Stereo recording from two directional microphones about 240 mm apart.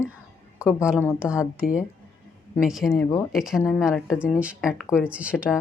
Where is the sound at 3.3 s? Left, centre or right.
Centre.